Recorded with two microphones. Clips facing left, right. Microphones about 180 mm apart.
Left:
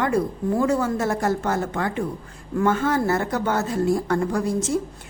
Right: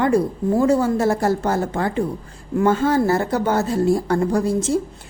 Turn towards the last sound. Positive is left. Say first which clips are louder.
# right 4 dB
turn(degrees=-30)  # may be behind; listen again after turning